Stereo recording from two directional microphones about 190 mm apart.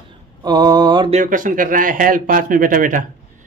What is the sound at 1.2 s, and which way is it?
Speech, 45° right (ahead or behind).